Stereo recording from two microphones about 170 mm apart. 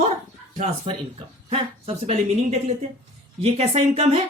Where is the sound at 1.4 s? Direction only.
35° right (ahead or behind).